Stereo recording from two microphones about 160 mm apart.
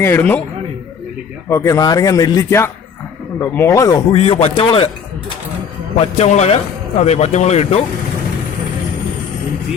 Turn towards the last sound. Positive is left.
turn(degrees=40)  # may be behind; listen again after turning